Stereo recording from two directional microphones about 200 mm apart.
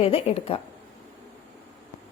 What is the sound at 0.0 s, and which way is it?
Speech, 30° left (ahead or behind).